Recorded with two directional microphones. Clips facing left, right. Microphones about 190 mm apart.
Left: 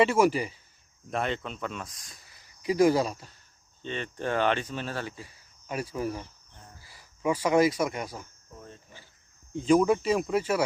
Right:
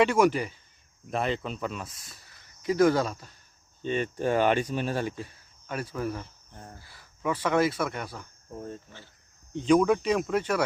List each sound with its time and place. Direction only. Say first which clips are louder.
0.0 s speech: even; 5° left (ahead or behind)
2.6 s speech: even; 5° left (ahead or behind)
3.8 s speech: right 5 dB; 10° right (ahead or behind)
5.6 s speech: even; 10° left (ahead or behind)
6.5 s cricket: right 7 dB; 50° right (ahead or behind)
6.8 s speech: left 2 dB; 10° left (ahead or behind)
8.5 s speech: right 9 dB; 45° right (ahead or behind)
9.5 s speech: even; 5° left (ahead or behind)